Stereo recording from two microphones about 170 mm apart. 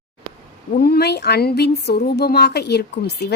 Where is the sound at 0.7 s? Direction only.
65° left (ahead or behind).